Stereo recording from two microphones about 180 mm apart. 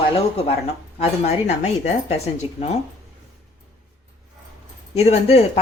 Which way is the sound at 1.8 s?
35° left (ahead or behind).